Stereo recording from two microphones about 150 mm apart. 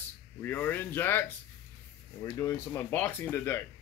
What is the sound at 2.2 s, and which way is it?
Speech, 20° left (ahead or behind).